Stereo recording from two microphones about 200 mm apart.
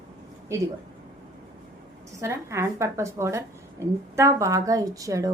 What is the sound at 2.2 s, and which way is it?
A woman's voice, 15° right (ahead or behind).